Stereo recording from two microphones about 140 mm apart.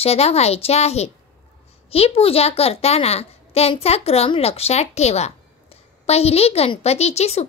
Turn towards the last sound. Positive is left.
turn(degrees=50)  # may be behind; listen again after turning